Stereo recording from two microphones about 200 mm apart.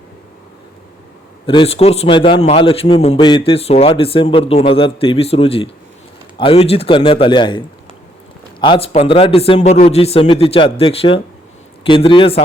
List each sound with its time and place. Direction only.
1.5 s a man's voice: 30° left (ahead or behind)
8.6 s a man's voice: 25° left (ahead or behind)